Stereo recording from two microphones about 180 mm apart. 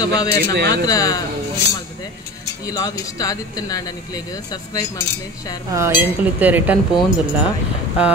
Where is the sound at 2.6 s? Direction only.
20° left (ahead or behind).